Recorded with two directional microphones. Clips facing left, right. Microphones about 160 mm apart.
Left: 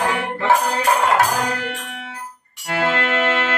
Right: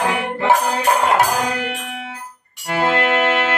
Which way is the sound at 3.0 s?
15° right (ahead or behind).